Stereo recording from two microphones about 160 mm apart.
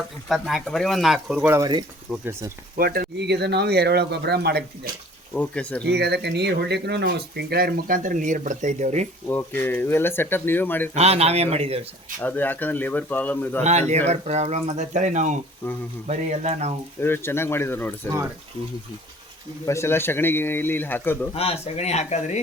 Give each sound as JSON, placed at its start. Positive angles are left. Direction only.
{"t": 0.3, "sound": "speech", "side_deg": 0}
{"t": 1.5, "sound": "speech", "side_deg": -25}
{"t": 2.1, "sound": "speech", "side_deg": 0}
{"t": 2.7, "sound": "speech", "side_deg": -65}
{"t": 5.3, "sound": "speech", "side_deg": 10}
{"t": 5.8, "sound": "speech", "side_deg": -90}
{"t": 9.3, "sound": "speech", "side_deg": 10}
{"t": 10.9, "sound": "speech", "side_deg": -40}
{"t": 12.2, "sound": "speech", "side_deg": 10}
{"t": 14.1, "sound": "speech", "side_deg": -45}
{"t": 17.0, "sound": "speech", "side_deg": 15}
{"t": 19.6, "sound": "speech", "side_deg": 15}
{"t": 21.3, "sound": "speech", "side_deg": 40}